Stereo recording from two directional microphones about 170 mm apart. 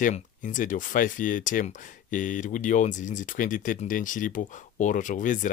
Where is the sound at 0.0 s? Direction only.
50° left (ahead or behind).